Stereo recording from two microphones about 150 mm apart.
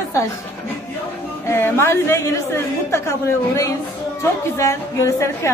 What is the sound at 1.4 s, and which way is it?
A woman's voice, 15° left (ahead or behind).